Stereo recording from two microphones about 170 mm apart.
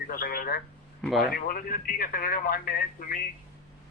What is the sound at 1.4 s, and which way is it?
Speech, 55° left (ahead or behind).